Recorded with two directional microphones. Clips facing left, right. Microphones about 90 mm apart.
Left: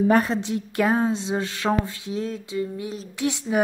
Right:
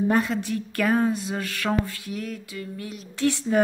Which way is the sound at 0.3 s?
20° left (ahead or behind).